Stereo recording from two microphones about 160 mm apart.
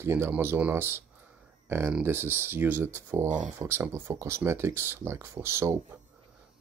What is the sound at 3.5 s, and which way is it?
Speech, 15° right (ahead or behind).